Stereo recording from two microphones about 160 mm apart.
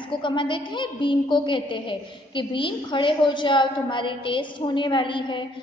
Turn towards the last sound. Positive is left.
turn(degrees=30)  # may be behind; listen again after turning